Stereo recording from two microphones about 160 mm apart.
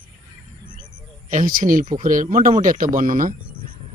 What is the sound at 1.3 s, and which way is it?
Speech, 55° right (ahead or behind).